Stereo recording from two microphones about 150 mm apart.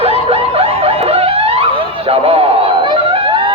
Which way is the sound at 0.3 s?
40° right (ahead or behind).